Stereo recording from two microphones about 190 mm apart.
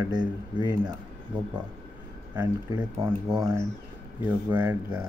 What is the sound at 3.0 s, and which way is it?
Speech, 20° right (ahead or behind).